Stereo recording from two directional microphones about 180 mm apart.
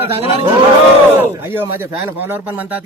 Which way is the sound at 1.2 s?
10° right (ahead or behind).